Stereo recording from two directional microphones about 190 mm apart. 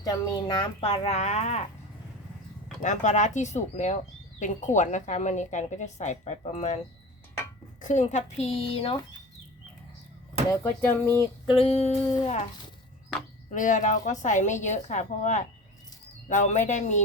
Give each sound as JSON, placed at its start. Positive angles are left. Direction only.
{"t": 0.0, "sound": "speech", "side_deg": 20}
{"t": 2.8, "sound": "speech", "side_deg": 40}
{"t": 7.8, "sound": "a woman's voice", "side_deg": 40}
{"t": 10.5, "sound": "speech", "side_deg": 10}
{"t": 11.4, "sound": "speech", "side_deg": 30}
{"t": 12.0, "sound": "speech", "side_deg": 20}
{"t": 13.5, "sound": "speech", "side_deg": 40}